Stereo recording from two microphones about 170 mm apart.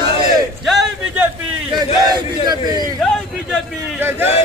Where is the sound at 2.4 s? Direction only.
25° right (ahead or behind).